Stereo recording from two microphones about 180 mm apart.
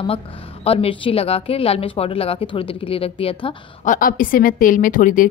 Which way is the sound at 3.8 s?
50° left (ahead or behind).